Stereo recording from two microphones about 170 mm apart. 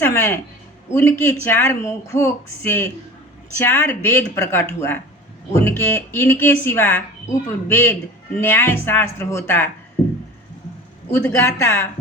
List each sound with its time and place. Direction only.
0.0 s speech: 15° left (ahead or behind)
11.1 s speech: 10° left (ahead or behind)